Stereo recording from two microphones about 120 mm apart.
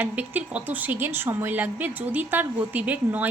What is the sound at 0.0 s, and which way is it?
A woman's voice, 10° right (ahead or behind).